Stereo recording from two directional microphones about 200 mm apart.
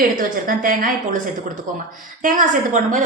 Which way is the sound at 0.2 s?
45° right (ahead or behind).